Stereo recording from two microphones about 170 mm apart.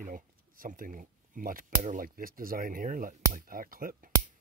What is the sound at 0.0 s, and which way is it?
Speech, 50° right (ahead or behind).